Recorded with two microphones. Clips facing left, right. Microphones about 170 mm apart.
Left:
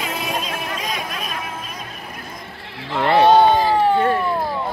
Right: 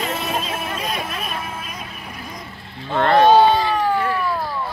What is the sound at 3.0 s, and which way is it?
Speech, 10° left (ahead or behind).